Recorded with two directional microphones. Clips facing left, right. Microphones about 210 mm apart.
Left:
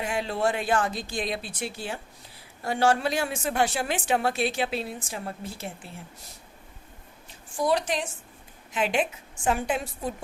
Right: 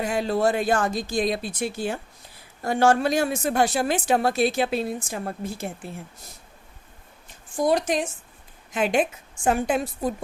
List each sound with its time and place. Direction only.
0.0 s a woman's voice: 40° right (ahead or behind)
7.5 s a woman's voice: 45° right (ahead or behind)